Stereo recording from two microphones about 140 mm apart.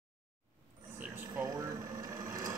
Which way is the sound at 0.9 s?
10° right (ahead or behind).